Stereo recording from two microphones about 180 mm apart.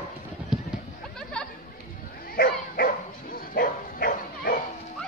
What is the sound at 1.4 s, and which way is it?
Chatter, 5° left (ahead or behind).